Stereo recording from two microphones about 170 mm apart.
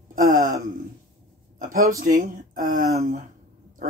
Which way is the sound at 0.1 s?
50° right (ahead or behind).